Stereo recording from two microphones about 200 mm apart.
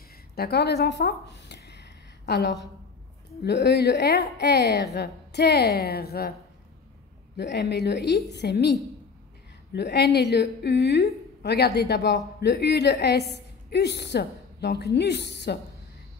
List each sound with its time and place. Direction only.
0.4 s a sound: 55° left (ahead or behind)
3.4 s a woman's voice: 55° left (ahead or behind)
7.3 s a woman's voice: 55° left (ahead or behind)